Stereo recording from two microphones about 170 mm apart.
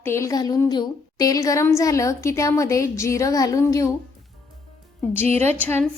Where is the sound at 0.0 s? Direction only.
15° left (ahead or behind).